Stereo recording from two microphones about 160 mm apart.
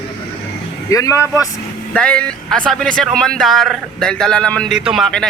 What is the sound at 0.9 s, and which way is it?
Speech, 20° left (ahead or behind).